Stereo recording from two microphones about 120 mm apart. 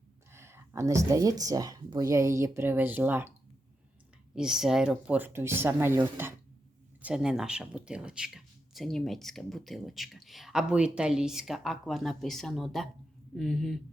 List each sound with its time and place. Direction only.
0.3 s speech: 20° right (ahead or behind)
4.4 s speech: 5° right (ahead or behind)
7.0 s speech: 5° right (ahead or behind)